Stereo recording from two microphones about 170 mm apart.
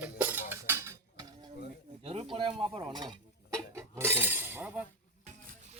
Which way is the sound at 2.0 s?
35° right (ahead or behind).